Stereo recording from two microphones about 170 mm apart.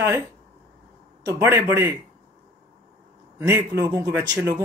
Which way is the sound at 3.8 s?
25° right (ahead or behind).